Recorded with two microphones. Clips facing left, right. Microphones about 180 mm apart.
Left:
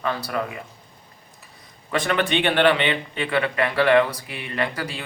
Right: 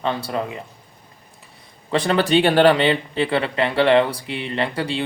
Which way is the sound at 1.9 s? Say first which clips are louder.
Right 4 dB; 30° right (ahead or behind).